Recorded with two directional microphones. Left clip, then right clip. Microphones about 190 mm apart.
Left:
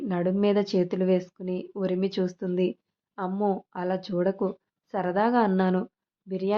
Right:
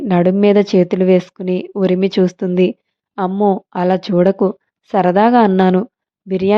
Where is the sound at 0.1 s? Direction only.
40° right (ahead or behind).